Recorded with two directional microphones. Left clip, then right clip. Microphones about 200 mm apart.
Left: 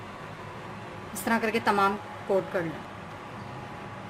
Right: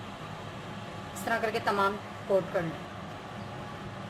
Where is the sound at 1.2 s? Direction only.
30° left (ahead or behind).